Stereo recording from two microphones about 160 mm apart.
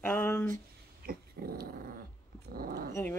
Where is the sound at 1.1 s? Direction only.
65° right (ahead or behind).